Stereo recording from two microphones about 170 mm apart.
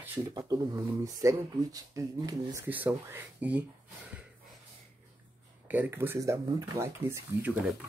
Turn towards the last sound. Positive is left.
turn(degrees=-15)  # may be behind; listen again after turning